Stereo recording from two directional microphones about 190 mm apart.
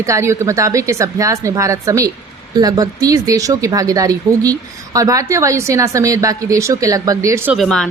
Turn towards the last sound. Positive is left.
turn(degrees=0)  # may be behind; listen again after turning